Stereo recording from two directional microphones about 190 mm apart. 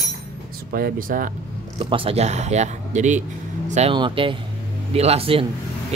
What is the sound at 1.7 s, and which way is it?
Speech, 30° right (ahead or behind).